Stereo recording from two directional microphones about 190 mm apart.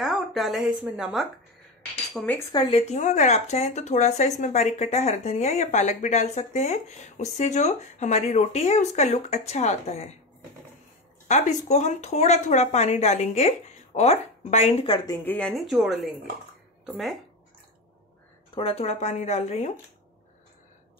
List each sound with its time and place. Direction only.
0.0 s speech: centre (ahead or behind)
2.1 s speech: 10° left (ahead or behind)
2.5 s speech: 25° left (ahead or behind)
2.9 s speech: 40° left (ahead or behind)
11.2 s speech: 35° left (ahead or behind)
15.0 s a woman's voice: 10° left (ahead or behind)
18.5 s speech: 30° left (ahead or behind)